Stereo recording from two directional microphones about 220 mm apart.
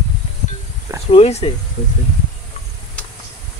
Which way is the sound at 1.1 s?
30° left (ahead or behind).